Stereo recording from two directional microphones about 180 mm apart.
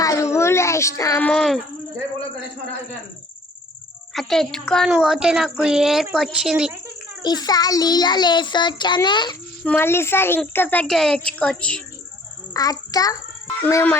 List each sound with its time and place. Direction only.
0.0 s a sound: 15° left (ahead or behind)
1.3 s a child's voice: 5° left (ahead or behind)
4.1 s a child's voice: centre (ahead or behind)
7.3 s a child's voice: 20° left (ahead or behind)
9.6 s a woman's voice: 10° left (ahead or behind)
12.6 s a child's voice: 20° left (ahead or behind)